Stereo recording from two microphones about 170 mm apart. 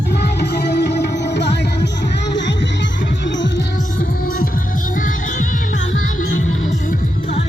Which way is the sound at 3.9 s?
55° left (ahead or behind).